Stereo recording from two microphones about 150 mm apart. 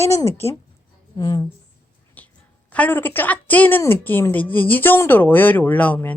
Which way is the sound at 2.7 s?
10° left (ahead or behind).